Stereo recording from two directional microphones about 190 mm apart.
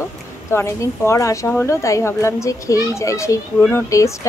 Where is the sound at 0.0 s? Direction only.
15° left (ahead or behind).